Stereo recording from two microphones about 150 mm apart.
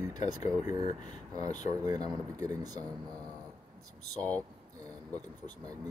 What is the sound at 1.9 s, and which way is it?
Speech, 25° right (ahead or behind).